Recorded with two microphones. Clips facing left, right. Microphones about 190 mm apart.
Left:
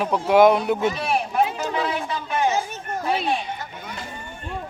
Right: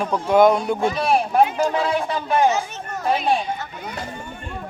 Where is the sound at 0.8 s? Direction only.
35° right (ahead or behind).